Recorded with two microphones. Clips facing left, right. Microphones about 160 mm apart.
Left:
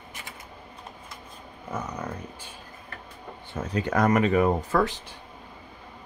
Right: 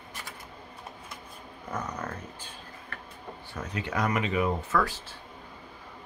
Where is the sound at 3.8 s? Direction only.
45° left (ahead or behind).